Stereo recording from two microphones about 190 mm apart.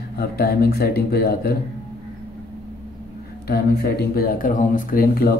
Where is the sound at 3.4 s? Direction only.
55° left (ahead or behind).